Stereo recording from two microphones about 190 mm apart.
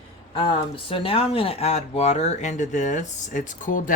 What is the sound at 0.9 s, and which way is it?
Speech, 30° left (ahead or behind).